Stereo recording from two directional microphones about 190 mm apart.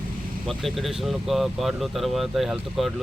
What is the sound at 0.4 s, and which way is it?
Speech, centre (ahead or behind).